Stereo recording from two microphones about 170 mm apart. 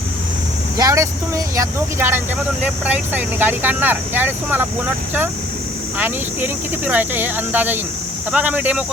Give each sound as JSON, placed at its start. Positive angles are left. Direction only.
{"t": 0.8, "sound": "speech", "side_deg": -20}
{"t": 6.0, "sound": "speech", "side_deg": -10}